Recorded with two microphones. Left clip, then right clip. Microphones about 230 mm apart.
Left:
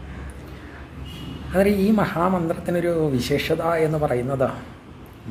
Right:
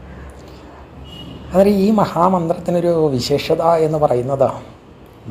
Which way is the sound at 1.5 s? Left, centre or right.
Centre.